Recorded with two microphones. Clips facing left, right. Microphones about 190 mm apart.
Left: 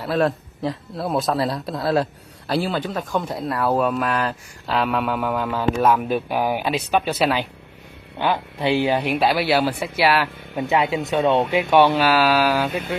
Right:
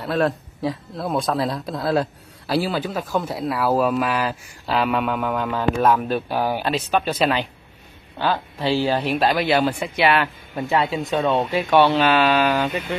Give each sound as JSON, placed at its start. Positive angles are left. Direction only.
{"t": 0.0, "sound": "speech", "side_deg": 0}
{"t": 10.7, "sound": "speech", "side_deg": 20}
{"t": 11.5, "sound": "speech", "side_deg": 15}